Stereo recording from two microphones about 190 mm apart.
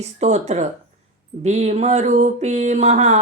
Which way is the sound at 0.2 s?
35° right (ahead or behind).